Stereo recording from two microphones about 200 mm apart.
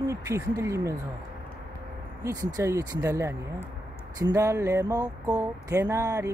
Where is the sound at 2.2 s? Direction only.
15° right (ahead or behind).